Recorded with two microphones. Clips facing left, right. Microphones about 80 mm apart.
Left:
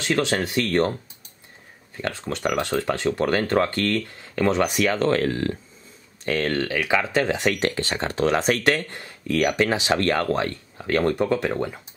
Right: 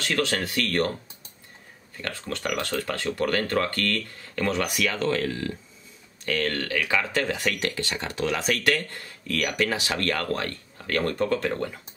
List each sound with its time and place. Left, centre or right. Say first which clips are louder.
0.0 s speech: left 4 dB; left
2.0 s speech: left 4 dB; left
4.8 s speech: left 3 dB; left
6.2 s speech: left 4 dB; left
7.6 s speech: left 5 dB; left; by 11.8 s centre